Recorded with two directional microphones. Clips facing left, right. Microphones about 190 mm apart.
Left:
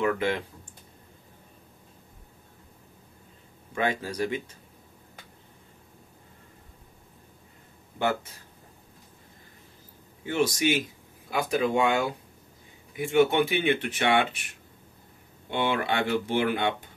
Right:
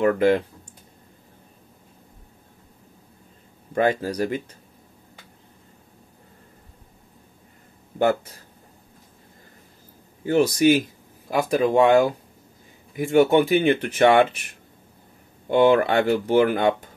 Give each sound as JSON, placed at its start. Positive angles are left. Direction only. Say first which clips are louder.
{"t": 0.0, "sound": "speech", "louder": "right 8 dB", "side_deg": -40}
{"t": 3.7, "sound": "speech", "louder": "right 7 dB", "side_deg": -40}
{"t": 10.2, "sound": "speech", "louder": "right 8 dB", "side_deg": -40}
{"t": 15.4, "sound": "speech", "louder": "right 11 dB", "side_deg": -40}